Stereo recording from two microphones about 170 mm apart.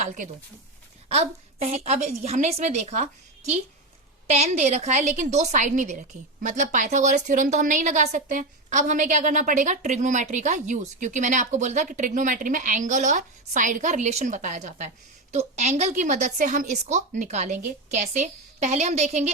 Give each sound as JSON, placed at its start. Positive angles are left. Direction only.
{"t": 1.0, "sound": "a woman's voice", "side_deg": -40}